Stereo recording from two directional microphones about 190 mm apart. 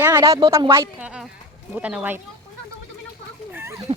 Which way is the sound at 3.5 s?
15° right (ahead or behind).